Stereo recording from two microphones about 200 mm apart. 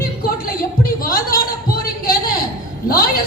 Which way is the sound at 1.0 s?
45° left (ahead or behind).